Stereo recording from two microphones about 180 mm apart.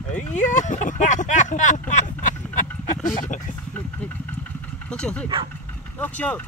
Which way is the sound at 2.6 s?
45° left (ahead or behind).